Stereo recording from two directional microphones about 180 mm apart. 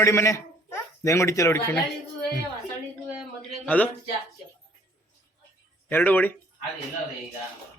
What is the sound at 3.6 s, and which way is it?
Speech, 10° left (ahead or behind).